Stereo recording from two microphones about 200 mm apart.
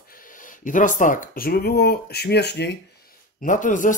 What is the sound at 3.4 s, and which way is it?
Speech, 40° left (ahead or behind).